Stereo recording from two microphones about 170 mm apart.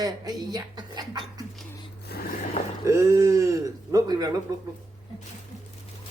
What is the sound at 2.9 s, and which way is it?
Speech, 15° right (ahead or behind).